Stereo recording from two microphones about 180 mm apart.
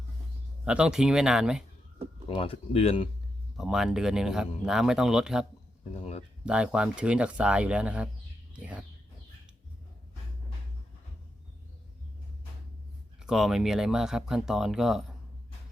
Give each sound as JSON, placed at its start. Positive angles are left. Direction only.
{"t": 0.6, "sound": "speech", "side_deg": -5}
{"t": 2.3, "sound": "speech", "side_deg": 30}
{"t": 3.6, "sound": "speech", "side_deg": 0}
{"t": 5.9, "sound": "speech", "side_deg": 35}
{"t": 6.4, "sound": "speech", "side_deg": -5}
{"t": 13.2, "sound": "speech", "side_deg": 0}